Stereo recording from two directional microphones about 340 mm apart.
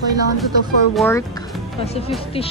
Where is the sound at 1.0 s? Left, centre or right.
Centre.